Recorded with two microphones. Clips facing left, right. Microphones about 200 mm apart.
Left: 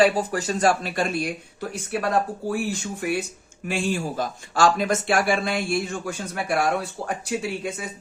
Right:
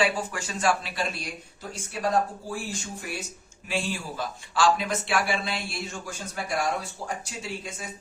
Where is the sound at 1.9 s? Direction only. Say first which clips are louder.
Left 2 dB; 65° left (ahead or behind).